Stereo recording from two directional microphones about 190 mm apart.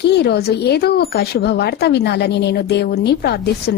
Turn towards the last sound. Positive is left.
turn(degrees=60)  # may be behind; listen again after turning